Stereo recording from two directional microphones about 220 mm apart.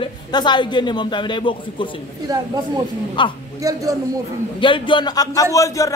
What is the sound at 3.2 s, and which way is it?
Speech, 20° left (ahead or behind).